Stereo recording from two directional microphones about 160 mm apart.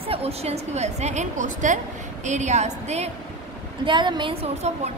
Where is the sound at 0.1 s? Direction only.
40° right (ahead or behind).